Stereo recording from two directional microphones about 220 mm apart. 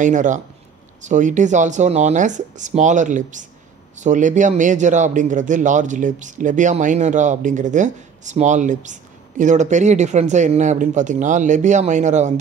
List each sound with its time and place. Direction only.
0.0 s speech: 35° right (ahead or behind)